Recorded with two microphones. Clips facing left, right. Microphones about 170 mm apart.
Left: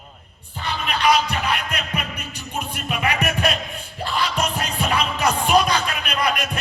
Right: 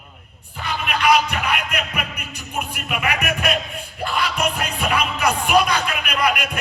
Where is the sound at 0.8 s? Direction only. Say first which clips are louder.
Right 1 dB; 30° left (ahead or behind).